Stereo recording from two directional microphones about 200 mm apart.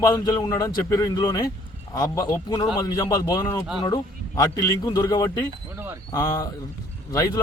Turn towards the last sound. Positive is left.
turn(degrees=15)  # may be behind; listen again after turning